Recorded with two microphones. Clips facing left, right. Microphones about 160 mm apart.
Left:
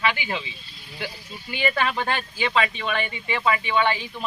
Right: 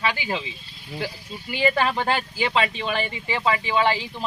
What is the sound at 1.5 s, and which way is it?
Speech, 30° right (ahead or behind).